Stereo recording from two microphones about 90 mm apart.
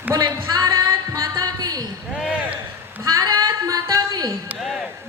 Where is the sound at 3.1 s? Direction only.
40° right (ahead or behind).